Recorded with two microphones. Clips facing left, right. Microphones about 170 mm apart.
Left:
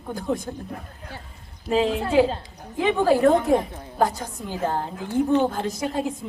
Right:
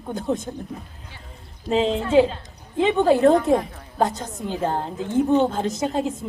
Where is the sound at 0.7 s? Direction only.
50° left (ahead or behind).